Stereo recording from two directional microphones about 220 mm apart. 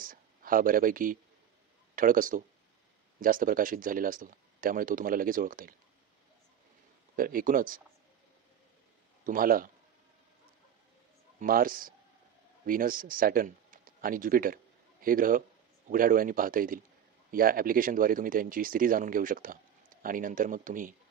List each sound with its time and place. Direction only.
0.0 s a sound: 40° right (ahead or behind)
2.0 s speech: 40° right (ahead or behind)
7.2 s speech: 40° right (ahead or behind)
9.2 s a man's voice: 40° right (ahead or behind)
11.3 s speech: 40° right (ahead or behind)